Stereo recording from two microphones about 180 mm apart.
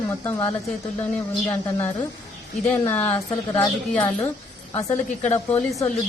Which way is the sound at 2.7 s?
10° left (ahead or behind).